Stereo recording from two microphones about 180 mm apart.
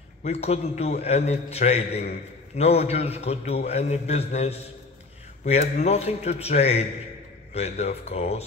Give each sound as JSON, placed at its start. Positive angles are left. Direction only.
{"t": 0.2, "sound": "a man's voice", "side_deg": 35}